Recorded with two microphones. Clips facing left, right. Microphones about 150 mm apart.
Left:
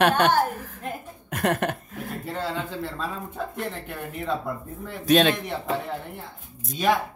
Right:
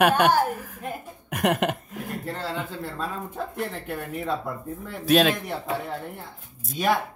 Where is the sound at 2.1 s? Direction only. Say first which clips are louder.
Left 1 dB; centre (ahead or behind).